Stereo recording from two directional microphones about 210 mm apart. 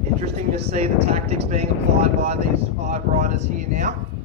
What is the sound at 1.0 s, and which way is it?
Speech, 30° right (ahead or behind).